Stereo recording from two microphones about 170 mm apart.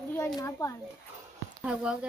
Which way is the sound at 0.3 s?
20° left (ahead or behind).